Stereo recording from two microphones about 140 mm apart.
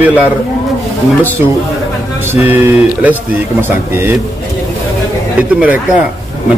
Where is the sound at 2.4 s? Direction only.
15° right (ahead or behind).